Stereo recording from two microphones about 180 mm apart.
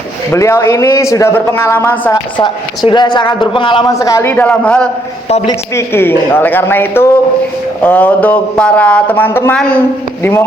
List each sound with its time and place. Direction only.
0.3 s speech: 15° left (ahead or behind)
2.4 s a man's voice: 25° left (ahead or behind); by 9.8 s 5° left (ahead or behind)